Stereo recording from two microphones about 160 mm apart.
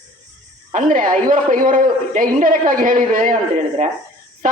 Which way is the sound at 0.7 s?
60° right (ahead or behind).